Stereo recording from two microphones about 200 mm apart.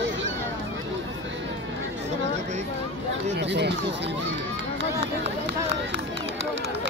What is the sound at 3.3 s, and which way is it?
Speech, 60° right (ahead or behind).